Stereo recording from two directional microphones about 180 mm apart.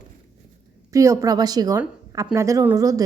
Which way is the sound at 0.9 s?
20° right (ahead or behind).